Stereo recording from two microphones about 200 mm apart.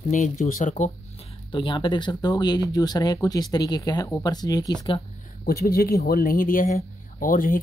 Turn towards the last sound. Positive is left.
turn(degrees=45)  # may be behind; listen again after turning